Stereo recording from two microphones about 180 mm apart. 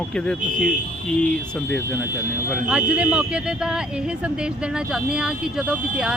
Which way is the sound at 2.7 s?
5° right (ahead or behind).